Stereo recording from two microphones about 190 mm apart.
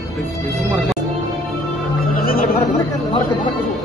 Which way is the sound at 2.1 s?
50° left (ahead or behind).